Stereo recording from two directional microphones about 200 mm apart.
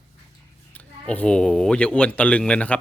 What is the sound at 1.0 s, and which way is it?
Speech, 5° left (ahead or behind).